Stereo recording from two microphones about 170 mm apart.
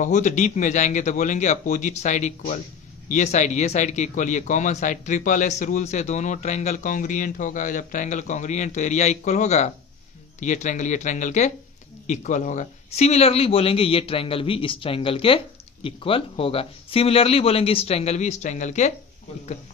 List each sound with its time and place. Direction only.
0.0 s a man's voice: 45° left (ahead or behind)